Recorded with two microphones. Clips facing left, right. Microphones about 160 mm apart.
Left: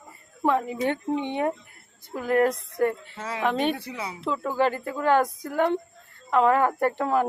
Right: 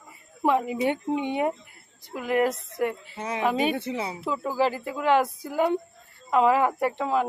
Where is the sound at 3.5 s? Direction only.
5° right (ahead or behind).